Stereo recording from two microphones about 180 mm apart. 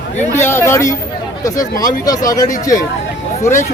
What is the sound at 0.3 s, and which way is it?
Speech, 15° left (ahead or behind).